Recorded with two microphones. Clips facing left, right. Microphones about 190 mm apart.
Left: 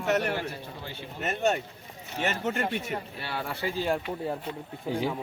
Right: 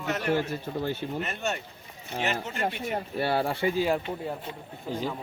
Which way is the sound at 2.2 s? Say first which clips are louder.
Left 2 dB; 50° left (ahead or behind).